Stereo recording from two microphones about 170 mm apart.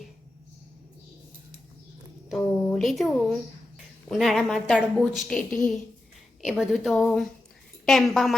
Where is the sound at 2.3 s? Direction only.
5° left (ahead or behind).